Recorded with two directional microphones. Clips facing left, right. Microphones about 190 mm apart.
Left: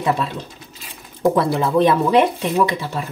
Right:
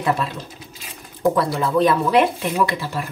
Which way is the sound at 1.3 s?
25° left (ahead or behind).